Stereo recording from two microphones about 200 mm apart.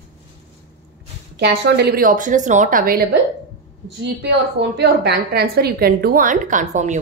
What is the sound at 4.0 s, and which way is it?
A woman's voice, 60° right (ahead or behind).